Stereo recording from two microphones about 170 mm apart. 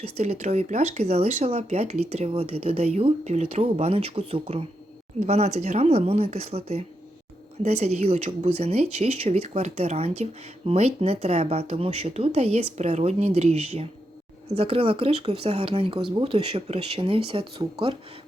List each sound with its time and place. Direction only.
0.0 s speech: 40° right (ahead or behind)